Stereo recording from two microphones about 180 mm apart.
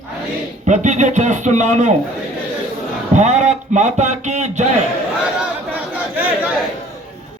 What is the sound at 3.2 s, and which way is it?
Speech, 40° right (ahead or behind).